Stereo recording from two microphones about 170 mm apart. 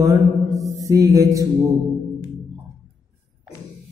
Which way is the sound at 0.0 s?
20° right (ahead or behind).